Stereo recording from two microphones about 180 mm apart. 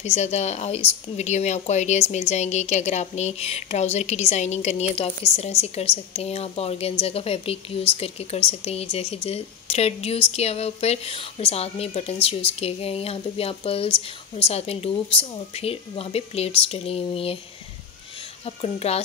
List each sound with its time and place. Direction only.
0.0 s speech: 40° left (ahead or behind)
18.4 s speech: 35° left (ahead or behind)